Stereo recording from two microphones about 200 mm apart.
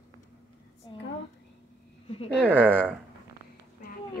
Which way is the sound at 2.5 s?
10° right (ahead or behind).